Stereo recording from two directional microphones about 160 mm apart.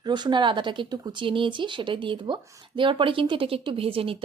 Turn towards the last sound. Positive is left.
turn(degrees=-35)  # may be behind; listen again after turning